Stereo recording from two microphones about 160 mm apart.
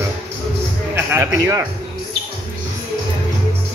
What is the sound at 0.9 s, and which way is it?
Speech, 15° right (ahead or behind).